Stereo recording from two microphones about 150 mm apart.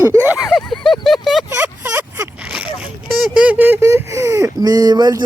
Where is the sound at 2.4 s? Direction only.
5° right (ahead or behind).